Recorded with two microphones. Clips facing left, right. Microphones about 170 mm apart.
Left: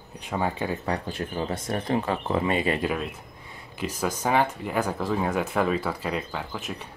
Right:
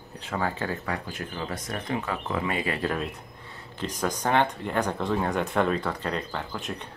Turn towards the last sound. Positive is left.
turn(degrees=0)  # may be behind; listen again after turning